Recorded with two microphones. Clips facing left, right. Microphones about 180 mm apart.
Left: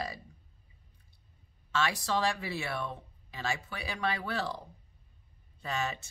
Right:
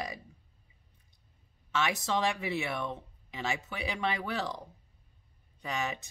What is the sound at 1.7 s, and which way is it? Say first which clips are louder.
Speech: even; 20° right (ahead or behind).